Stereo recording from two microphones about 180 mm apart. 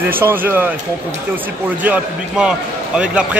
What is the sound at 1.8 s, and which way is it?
A man's voice, 5° right (ahead or behind).